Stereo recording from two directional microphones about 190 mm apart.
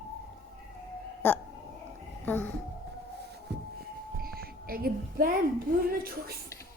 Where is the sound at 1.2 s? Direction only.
10° left (ahead or behind).